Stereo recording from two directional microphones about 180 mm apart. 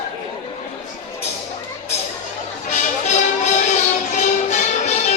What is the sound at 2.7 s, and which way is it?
Music, 40° left (ahead or behind).